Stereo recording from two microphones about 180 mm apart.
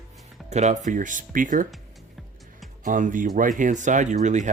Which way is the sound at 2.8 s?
45° right (ahead or behind).